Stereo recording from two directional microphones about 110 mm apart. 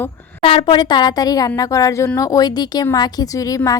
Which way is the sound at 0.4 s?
50° left (ahead or behind).